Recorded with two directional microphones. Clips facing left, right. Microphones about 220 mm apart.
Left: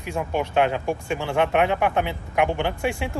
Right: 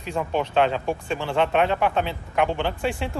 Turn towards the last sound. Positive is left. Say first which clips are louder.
# left 1 dB
turn(degrees=15)  # may be behind; listen again after turning